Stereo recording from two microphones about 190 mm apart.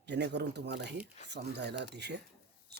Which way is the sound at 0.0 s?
65° right (ahead or behind).